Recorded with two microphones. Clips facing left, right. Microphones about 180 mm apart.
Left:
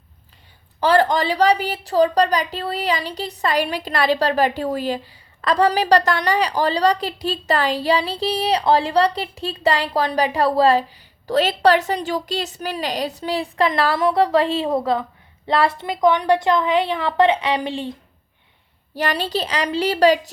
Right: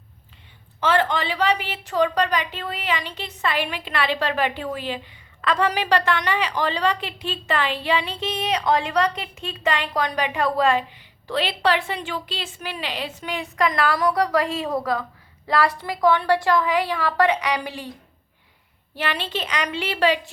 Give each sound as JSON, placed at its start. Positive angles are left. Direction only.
{"t": 0.8, "sound": "a woman's voice", "side_deg": 35}
{"t": 18.9, "sound": "a woman's voice", "side_deg": 40}